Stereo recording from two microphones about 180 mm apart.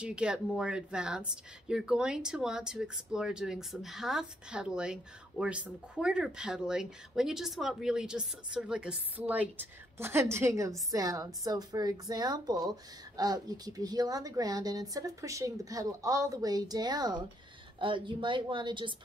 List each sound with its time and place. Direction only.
0.0 s a woman's voice: 5° right (ahead or behind); by 18.9 s 25° right (ahead or behind)